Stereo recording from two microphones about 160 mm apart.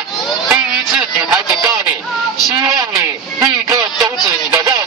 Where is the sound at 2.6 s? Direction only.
20° right (ahead or behind).